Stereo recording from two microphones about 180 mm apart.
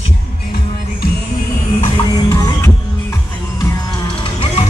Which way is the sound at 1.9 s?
20° left (ahead or behind).